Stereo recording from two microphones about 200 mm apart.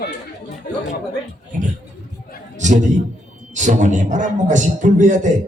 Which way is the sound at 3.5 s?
40° right (ahead or behind).